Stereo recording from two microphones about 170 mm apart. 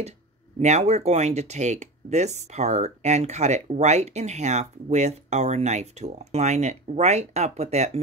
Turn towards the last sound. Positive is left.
turn(degrees=-40)  # may be behind; listen again after turning